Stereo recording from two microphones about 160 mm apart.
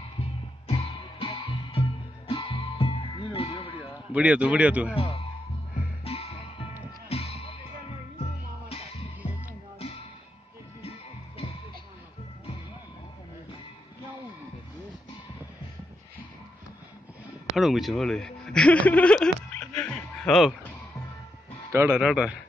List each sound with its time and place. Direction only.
0.2 s music: 35° left (ahead or behind)
3.7 s a man's voice: 10° right (ahead or behind)
4.9 s a man's voice: 40° left (ahead or behind)
6.0 s music: 40° left (ahead or behind)
8.6 s music: 40° left (ahead or behind)
10.8 s music: 40° left (ahead or behind)
17.6 s speech: centre (ahead or behind)
21.7 s speech: 10° right (ahead or behind)